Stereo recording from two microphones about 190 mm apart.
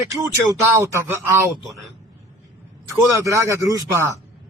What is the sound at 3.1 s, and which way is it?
Speech, 15° right (ahead or behind).